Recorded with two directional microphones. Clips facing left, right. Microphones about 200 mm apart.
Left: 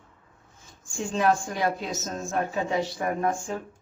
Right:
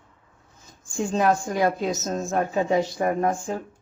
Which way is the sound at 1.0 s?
40° right (ahead or behind).